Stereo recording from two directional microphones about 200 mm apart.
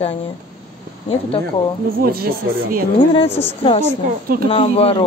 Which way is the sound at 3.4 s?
30° left (ahead or behind).